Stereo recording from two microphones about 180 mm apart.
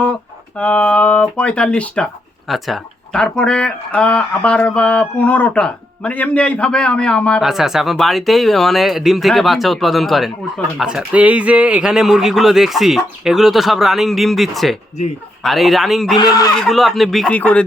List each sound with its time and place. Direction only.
0.0 s speech: 5° left (ahead or behind)
16.1 s speech: 20° left (ahead or behind)
16.6 s speech: centre (ahead or behind)